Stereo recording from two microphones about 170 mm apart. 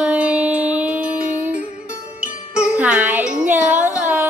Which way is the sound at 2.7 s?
10° right (ahead or behind).